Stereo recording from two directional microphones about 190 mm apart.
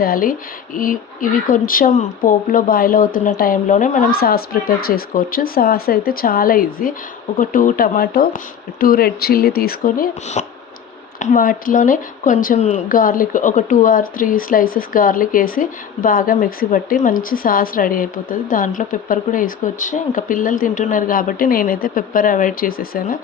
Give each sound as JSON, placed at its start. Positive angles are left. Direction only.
{"t": 0.0, "sound": "speech", "side_deg": 50}